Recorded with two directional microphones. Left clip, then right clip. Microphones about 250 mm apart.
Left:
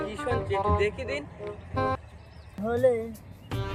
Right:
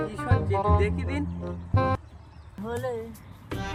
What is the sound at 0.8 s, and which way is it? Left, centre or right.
Music, centre.